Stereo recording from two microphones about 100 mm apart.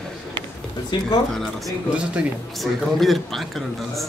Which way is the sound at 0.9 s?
50° left (ahead or behind).